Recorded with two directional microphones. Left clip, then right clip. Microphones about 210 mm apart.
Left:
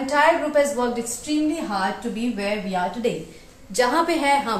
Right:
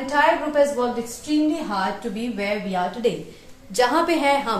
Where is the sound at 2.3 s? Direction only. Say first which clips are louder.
Right 1 dB; 20° right (ahead or behind).